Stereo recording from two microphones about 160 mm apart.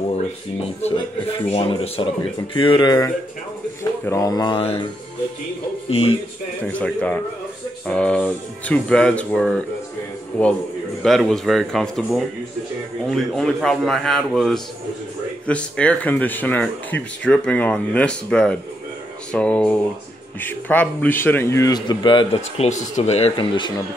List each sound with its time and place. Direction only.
1.5 s a man's voice: 35° left (ahead or behind)
5.9 s speech: 35° left (ahead or behind)
6.7 s a man's voice: 10° left (ahead or behind); by 23.7 s 30° left (ahead or behind)